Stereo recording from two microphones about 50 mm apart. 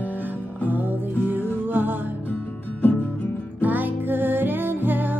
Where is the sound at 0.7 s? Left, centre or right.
Right.